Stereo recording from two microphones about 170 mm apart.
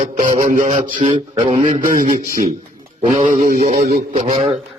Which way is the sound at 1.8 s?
50° right (ahead or behind).